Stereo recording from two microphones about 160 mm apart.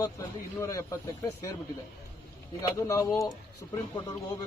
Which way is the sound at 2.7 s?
20° left (ahead or behind).